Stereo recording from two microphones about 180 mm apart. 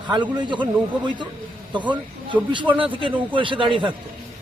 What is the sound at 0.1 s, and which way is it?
Speech, 25° right (ahead or behind).